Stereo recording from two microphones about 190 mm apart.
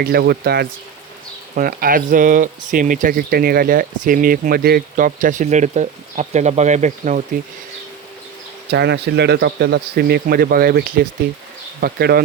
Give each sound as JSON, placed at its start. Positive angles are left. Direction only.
{"t": 0.0, "sound": "speech", "side_deg": -55}
{"t": 8.7, "sound": "speech", "side_deg": -60}